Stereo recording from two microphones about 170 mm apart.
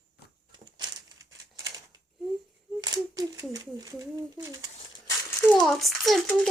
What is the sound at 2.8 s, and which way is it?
Speech, 20° right (ahead or behind).